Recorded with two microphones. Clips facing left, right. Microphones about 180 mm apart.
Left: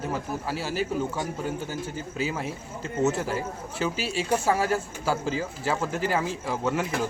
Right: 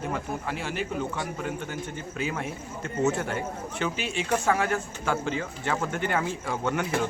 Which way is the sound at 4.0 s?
35° left (ahead or behind).